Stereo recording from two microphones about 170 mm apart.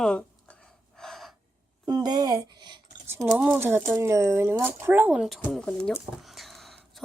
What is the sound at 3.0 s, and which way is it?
Typing, 15° right (ahead or behind).